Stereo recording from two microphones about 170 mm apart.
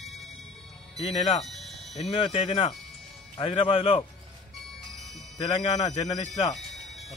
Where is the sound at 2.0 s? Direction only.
35° left (ahead or behind).